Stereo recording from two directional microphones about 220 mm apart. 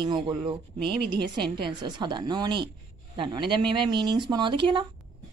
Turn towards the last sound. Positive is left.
turn(degrees=-20)  # may be behind; listen again after turning